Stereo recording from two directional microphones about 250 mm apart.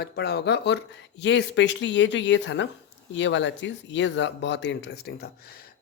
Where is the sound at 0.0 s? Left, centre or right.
Left.